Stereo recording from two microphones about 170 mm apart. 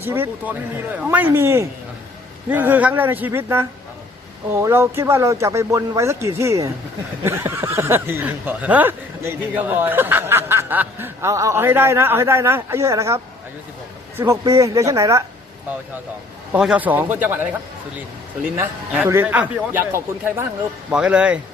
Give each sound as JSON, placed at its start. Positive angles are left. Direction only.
{"t": 0.0, "sound": "speech", "side_deg": -10}
{"t": 16.5, "sound": "speech", "side_deg": -5}
{"t": 18.5, "sound": "speech", "side_deg": -15}